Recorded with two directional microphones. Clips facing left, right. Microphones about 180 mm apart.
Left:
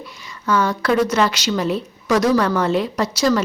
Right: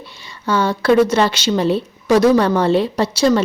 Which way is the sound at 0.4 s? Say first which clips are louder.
Right 3 dB; 30° right (ahead or behind).